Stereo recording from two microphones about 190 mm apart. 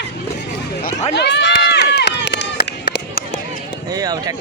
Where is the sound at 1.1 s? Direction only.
65° left (ahead or behind).